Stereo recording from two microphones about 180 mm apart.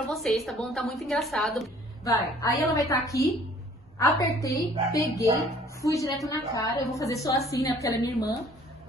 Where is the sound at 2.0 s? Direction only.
20° left (ahead or behind).